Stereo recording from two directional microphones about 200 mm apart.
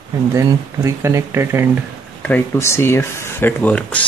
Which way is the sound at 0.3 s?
15° right (ahead or behind).